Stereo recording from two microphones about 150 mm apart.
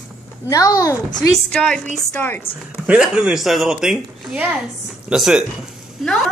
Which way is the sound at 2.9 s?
5° right (ahead or behind).